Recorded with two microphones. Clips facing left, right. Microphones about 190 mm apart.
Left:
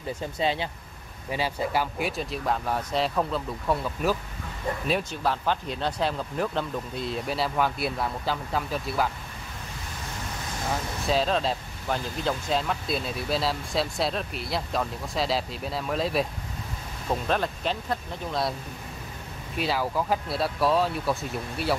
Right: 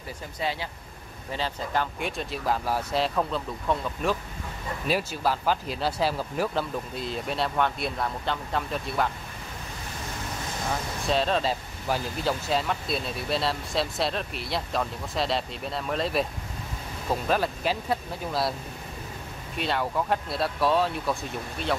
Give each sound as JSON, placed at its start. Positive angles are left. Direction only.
{"t": 0.4, "sound": "speech", "side_deg": 25}
{"t": 1.3, "sound": "speech", "side_deg": 10}
{"t": 11.1, "sound": "speech", "side_deg": 0}
{"t": 19.6, "sound": "speech", "side_deg": 0}